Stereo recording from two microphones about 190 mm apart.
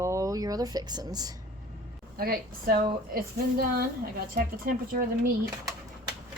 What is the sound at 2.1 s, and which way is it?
A woman's voice, 50° right (ahead or behind).